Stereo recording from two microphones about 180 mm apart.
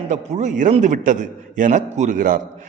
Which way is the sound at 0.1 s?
40° right (ahead or behind).